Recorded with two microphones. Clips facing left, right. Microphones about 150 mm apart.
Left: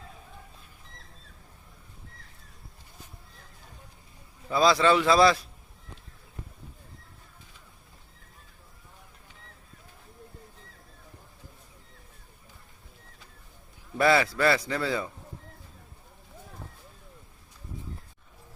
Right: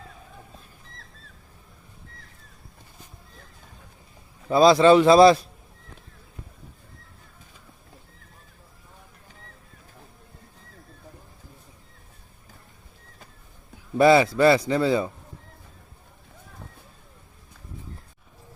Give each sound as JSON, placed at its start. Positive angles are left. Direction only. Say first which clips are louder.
{"t": 4.4, "sound": "a man's voice", "louder": "right 7 dB", "side_deg": -25}
{"t": 14.0, "sound": "a man's voice", "louder": "right 6 dB", "side_deg": -20}